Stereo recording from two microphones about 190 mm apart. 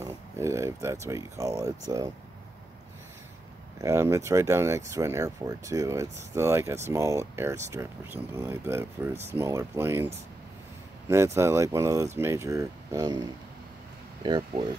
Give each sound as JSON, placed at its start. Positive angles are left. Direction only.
{"t": 0.0, "sound": "speech", "side_deg": -15}
{"t": 3.8, "sound": "speech", "side_deg": -15}